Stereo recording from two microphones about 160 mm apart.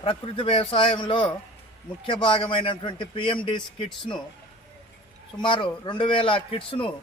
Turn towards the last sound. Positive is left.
turn(degrees=35)  # may be behind; listen again after turning